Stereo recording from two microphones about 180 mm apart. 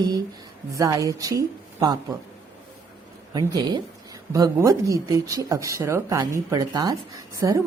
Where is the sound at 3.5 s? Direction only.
20° right (ahead or behind).